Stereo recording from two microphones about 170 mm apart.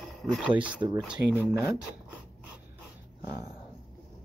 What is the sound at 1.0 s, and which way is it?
Speech, centre (ahead or behind).